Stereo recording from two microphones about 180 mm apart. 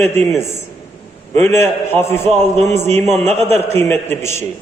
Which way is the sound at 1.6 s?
15° left (ahead or behind).